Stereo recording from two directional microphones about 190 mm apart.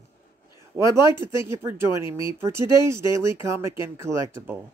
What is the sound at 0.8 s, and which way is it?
Speech, 25° left (ahead or behind).